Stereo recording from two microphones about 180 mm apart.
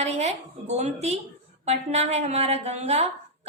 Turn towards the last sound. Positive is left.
turn(degrees=-35)  # may be behind; listen again after turning